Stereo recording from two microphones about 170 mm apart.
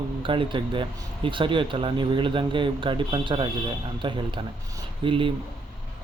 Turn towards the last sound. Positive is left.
turn(degrees=-30)  # may be behind; listen again after turning